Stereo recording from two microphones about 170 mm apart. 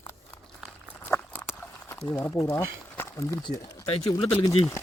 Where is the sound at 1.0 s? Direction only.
15° left (ahead or behind).